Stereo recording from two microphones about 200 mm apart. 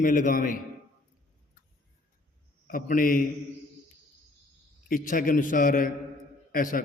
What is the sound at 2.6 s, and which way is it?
Speech, 45° left (ahead or behind).